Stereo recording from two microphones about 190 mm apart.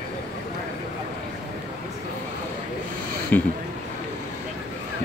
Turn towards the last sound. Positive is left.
turn(degrees=10)  # may be behind; listen again after turning